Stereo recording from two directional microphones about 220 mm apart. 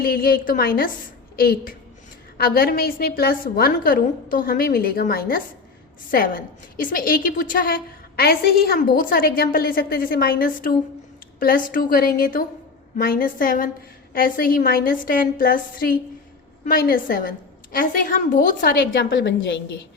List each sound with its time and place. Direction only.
0.0 s a woman's voice: 40° left (ahead or behind)